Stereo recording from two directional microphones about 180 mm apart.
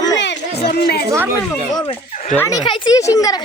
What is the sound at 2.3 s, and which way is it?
Speech, 15° left (ahead or behind).